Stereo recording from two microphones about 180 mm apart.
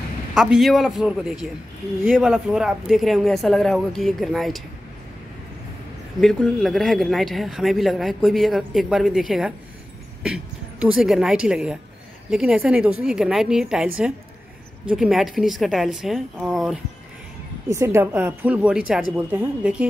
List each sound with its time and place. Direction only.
0.3 s speech: 5° right (ahead or behind)
6.2 s speech: centre (ahead or behind)
14.9 s speech: centre (ahead or behind)
17.6 s speech: 15° right (ahead or behind)